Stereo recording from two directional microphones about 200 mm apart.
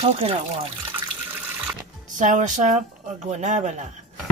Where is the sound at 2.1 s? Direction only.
40° right (ahead or behind).